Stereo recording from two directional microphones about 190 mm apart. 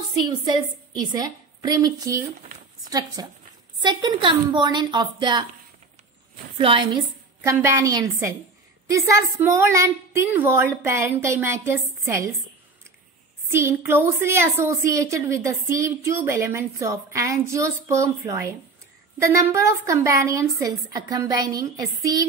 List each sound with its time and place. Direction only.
0.5 s a woman's voice: 20° right (ahead or behind)
6.6 s a woman's voice: 25° right (ahead or behind)
7.4 s a woman's voice: 15° right (ahead or behind)
13.5 s a woman's voice: 10° right (ahead or behind)